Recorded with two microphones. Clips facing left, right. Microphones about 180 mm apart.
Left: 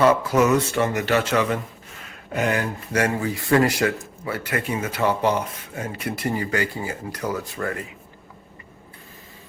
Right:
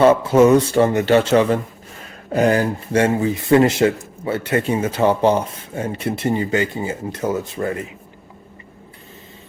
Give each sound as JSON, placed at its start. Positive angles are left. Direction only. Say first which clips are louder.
{"t": 0.0, "sound": "speech", "louder": "right 6 dB", "side_deg": -25}